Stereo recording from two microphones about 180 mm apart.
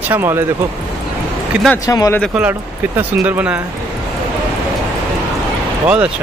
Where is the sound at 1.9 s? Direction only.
20° left (ahead or behind).